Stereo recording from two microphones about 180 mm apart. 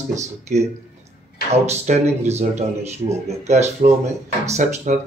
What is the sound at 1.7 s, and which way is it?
Speech, 35° right (ahead or behind).